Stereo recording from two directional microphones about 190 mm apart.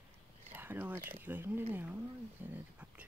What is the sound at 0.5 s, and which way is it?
Speech, 10° right (ahead or behind).